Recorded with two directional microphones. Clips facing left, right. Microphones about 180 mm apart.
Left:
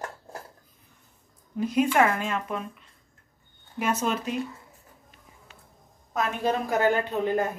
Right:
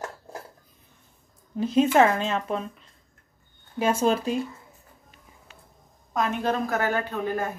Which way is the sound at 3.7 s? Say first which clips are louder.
Right 4 dB; 30° right (ahead or behind).